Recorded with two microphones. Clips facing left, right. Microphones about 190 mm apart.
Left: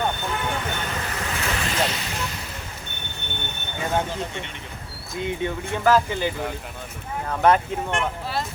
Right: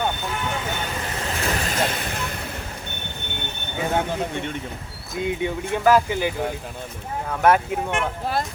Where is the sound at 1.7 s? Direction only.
50° right (ahead or behind).